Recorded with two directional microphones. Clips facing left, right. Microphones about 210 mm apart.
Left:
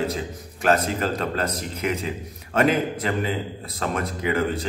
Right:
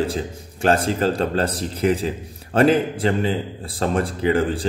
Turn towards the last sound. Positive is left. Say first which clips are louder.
# right 4 dB
turn(degrees=-30)  # may be behind; listen again after turning